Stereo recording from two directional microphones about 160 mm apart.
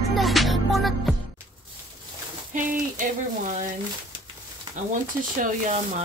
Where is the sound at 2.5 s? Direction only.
55° right (ahead or behind).